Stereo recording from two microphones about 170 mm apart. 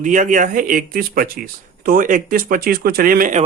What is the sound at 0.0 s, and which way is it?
Speech, 50° right (ahead or behind).